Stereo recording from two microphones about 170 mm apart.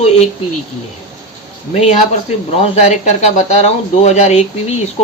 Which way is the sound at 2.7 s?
40° left (ahead or behind).